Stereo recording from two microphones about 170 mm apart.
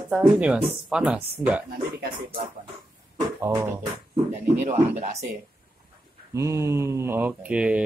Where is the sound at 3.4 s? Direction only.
15° right (ahead or behind).